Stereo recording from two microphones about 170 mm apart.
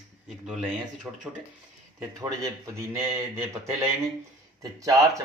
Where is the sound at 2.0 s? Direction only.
15° right (ahead or behind).